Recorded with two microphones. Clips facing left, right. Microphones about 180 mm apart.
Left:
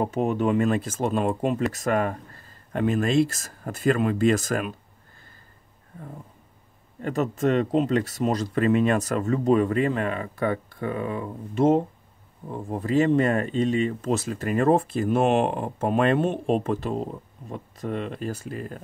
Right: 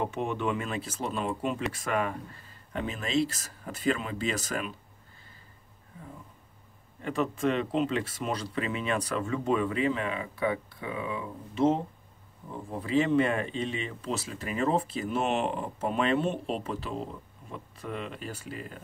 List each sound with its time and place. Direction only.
0.0 s speech: 40° left (ahead or behind)
7.0 s speech: 40° left (ahead or behind)